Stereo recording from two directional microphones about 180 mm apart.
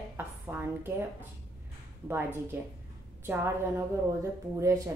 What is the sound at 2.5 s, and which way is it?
Speech, 10° right (ahead or behind).